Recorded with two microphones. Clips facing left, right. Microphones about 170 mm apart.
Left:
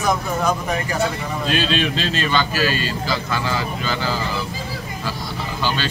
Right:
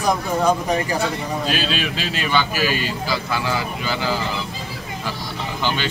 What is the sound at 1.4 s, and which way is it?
A man's voice, 5° right (ahead or behind).